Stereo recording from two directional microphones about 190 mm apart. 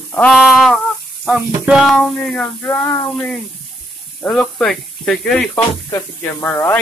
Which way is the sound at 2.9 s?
15° left (ahead or behind).